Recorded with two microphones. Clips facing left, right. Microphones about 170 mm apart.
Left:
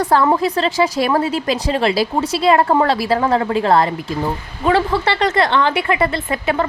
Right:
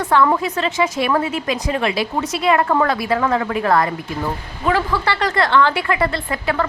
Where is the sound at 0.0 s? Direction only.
35° left (ahead or behind).